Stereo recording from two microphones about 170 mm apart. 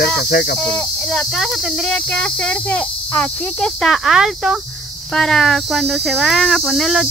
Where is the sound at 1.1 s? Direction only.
5° left (ahead or behind).